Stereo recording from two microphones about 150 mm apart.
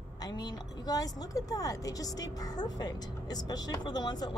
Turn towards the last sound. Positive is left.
turn(degrees=30)  # may be behind; listen again after turning